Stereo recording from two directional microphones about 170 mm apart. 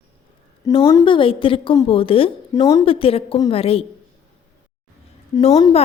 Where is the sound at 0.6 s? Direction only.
20° left (ahead or behind).